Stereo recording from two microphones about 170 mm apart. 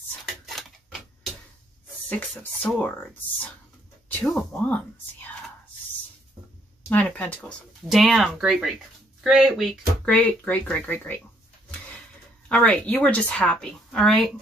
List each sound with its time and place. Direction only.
0.5 s a sound: centre (ahead or behind)
2.0 s speech: 10° left (ahead or behind)
4.2 s speech: 5° left (ahead or behind)
6.9 s speech: 10° left (ahead or behind)
12.4 s speech: 5° left (ahead or behind)